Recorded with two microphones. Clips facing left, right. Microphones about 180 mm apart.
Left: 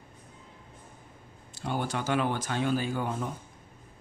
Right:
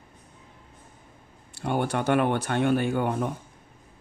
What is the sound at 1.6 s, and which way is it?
A man's voice, 60° right (ahead or behind).